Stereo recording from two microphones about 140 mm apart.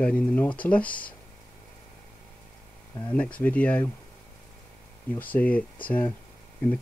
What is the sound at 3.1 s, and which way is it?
Speech, 10° left (ahead or behind).